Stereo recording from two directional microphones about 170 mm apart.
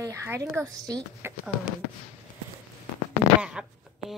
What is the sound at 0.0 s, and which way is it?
Speech, 15° right (ahead or behind).